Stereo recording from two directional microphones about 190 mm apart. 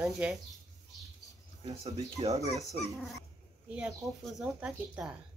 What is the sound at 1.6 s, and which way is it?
Speech, 30° right (ahead or behind).